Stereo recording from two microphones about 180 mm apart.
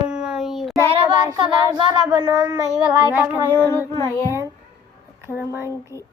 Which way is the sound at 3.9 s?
20° left (ahead or behind).